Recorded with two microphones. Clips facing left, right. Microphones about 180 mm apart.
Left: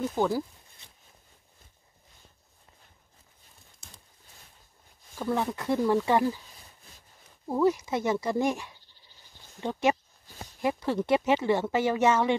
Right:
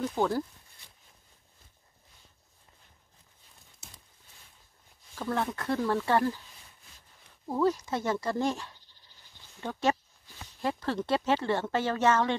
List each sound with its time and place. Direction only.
0.1 s speech: 5° left (ahead or behind)
5.1 s speech: 10° left (ahead or behind)
7.4 s speech: 10° left (ahead or behind)